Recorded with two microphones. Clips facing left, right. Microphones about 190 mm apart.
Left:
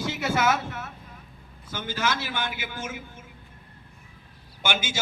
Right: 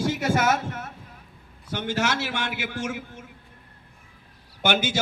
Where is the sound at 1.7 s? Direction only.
70° right (ahead or behind).